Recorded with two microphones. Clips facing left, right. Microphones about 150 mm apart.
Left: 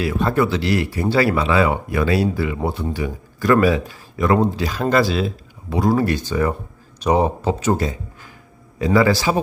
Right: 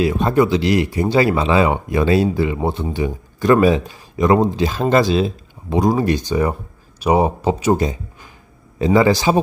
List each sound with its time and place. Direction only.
0.0 s speech: 20° right (ahead or behind)